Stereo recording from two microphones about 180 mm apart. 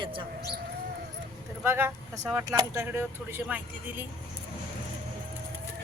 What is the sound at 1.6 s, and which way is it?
Speech, 15° right (ahead or behind).